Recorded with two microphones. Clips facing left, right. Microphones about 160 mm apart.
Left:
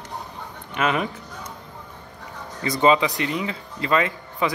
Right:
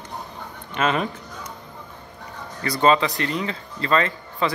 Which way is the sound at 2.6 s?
15° left (ahead or behind).